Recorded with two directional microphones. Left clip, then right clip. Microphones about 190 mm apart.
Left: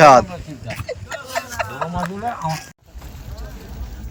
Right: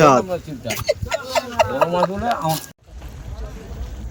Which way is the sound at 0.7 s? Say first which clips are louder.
Right 8 dB; 65° right (ahead or behind).